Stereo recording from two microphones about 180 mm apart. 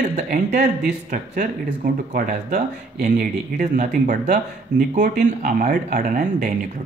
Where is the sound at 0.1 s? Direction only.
45° right (ahead or behind).